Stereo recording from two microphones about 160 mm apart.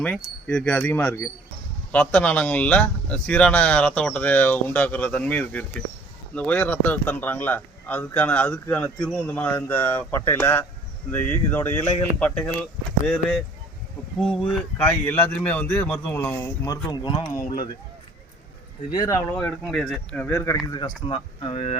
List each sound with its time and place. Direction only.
0.0 s speech: 5° left (ahead or behind)
14.2 s speech: centre (ahead or behind); by 17.3 s 30° left (ahead or behind)
18.9 s speech: 25° left (ahead or behind)
19.3 s speech: 10° left (ahead or behind)
20.7 s speech: 30° left (ahead or behind)